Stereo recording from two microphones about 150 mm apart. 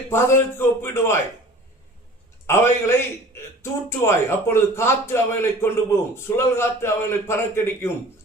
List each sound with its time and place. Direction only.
0.1 s a man's voice: 15° left (ahead or behind)
2.5 s a man's voice: 15° left (ahead or behind)